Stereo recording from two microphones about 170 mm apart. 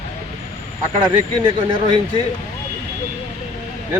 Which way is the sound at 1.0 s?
30° right (ahead or behind).